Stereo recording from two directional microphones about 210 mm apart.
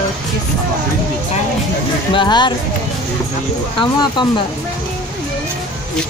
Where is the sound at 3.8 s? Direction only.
20° left (ahead or behind).